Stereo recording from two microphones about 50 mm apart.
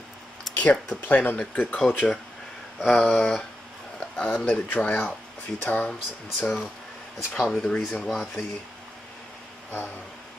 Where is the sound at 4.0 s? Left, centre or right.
Left.